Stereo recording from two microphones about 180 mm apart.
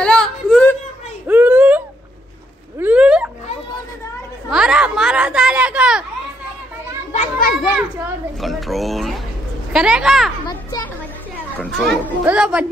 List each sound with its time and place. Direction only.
0.0 s whimper: 5° left (ahead or behind)
1.2 s a sound: 10° right (ahead or behind)
2.8 s a sound: 5° right (ahead or behind)
4.5 s a sound: 5° right (ahead or behind)
7.1 s children playing: 45° left (ahead or behind)
7.5 s children playing: 5° right (ahead or behind)
9.7 s a woman's voice: 5° right (ahead or behind)
11.5 s children playing: 5° left (ahead or behind)
12.3 s a woman's voice: 5° right (ahead or behind)